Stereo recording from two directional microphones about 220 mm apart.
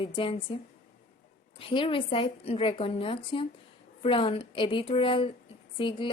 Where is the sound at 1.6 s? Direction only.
25° left (ahead or behind).